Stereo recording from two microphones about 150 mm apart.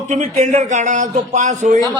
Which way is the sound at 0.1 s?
50° right (ahead or behind).